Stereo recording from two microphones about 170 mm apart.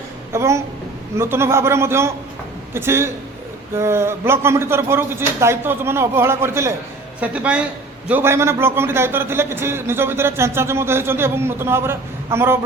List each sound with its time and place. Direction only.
0.3 s a man's voice: 15° right (ahead or behind)